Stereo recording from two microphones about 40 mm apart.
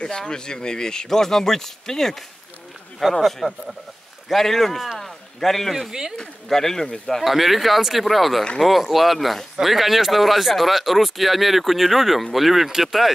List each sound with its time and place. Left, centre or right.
0.0 s speech: centre
3.0 s speech: centre
4.9 s a sound: centre
5.9 s speech: centre
6.1 s speech: centre
7.2 s speech: centre